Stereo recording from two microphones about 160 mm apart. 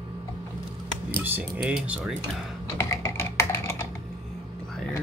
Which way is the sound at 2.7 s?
15° left (ahead or behind).